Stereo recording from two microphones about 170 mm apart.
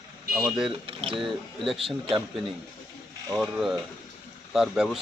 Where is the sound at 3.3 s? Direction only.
5° right (ahead or behind).